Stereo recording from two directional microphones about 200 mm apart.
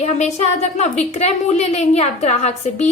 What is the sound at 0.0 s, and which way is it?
A woman's voice, 35° left (ahead or behind).